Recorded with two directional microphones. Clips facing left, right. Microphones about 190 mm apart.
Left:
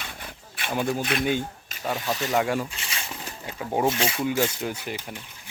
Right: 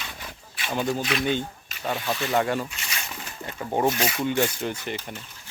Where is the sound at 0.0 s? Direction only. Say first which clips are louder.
Even; 50° left (ahead or behind).